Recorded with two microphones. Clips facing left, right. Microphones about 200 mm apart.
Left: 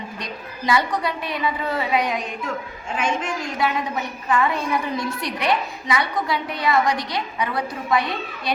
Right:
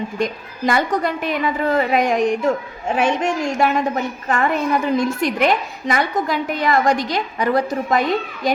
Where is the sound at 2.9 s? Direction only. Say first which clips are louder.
Right 6 dB; 70° right (ahead or behind).